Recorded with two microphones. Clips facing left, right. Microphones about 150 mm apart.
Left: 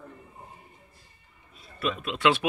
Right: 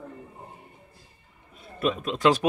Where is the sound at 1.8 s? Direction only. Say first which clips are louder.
Right 3 dB; 40° right (ahead or behind).